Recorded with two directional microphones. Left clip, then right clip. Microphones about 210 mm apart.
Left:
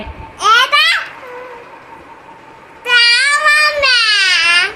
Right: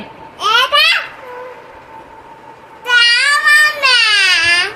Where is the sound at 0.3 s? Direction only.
10° left (ahead or behind).